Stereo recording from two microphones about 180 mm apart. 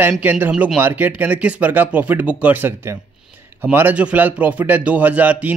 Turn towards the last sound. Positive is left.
turn(degrees=-10)  # may be behind; listen again after turning